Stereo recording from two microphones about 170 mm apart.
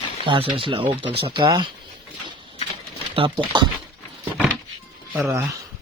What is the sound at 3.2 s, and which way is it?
Speech, 25° right (ahead or behind).